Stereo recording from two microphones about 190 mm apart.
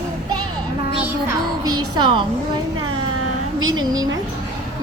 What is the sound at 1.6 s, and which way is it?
Speech, 20° right (ahead or behind).